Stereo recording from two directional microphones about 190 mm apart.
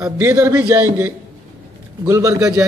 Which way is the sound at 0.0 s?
15° right (ahead or behind).